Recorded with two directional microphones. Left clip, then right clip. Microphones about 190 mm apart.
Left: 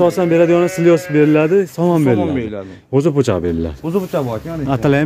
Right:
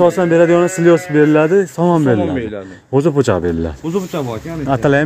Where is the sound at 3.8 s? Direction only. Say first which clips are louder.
Left 1 dB; 45° left (ahead or behind).